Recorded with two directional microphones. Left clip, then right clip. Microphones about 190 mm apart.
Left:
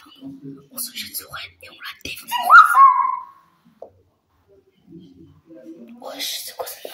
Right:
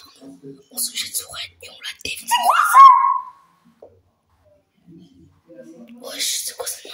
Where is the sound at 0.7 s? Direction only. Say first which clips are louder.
Right 6 dB; 20° right (ahead or behind).